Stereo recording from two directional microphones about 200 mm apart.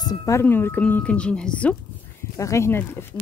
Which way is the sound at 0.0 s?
20° left (ahead or behind).